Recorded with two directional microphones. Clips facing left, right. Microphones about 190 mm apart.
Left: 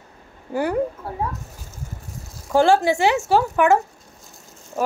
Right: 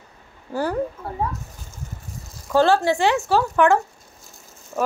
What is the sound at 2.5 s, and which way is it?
Speech, 15° left (ahead or behind).